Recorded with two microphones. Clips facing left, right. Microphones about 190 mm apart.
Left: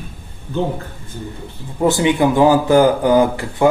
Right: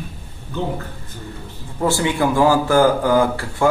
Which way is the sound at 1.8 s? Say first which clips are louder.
Left 4 dB; 20° left (ahead or behind).